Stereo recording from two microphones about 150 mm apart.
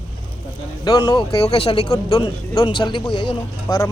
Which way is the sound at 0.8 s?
25° left (ahead or behind).